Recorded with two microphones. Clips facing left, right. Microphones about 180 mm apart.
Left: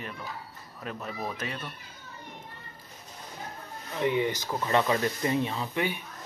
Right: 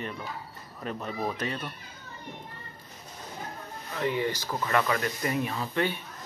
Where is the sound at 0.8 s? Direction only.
5° left (ahead or behind).